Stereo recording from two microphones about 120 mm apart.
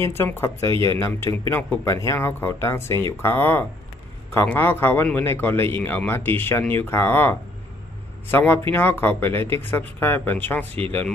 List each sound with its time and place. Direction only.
0.0 s a man's voice: 20° left (ahead or behind)